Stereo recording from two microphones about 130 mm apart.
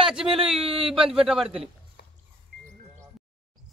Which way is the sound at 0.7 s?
45° right (ahead or behind).